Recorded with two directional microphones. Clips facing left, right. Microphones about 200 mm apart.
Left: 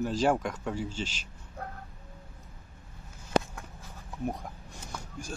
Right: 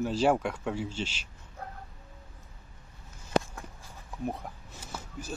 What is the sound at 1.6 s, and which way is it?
Dog, 55° left (ahead or behind).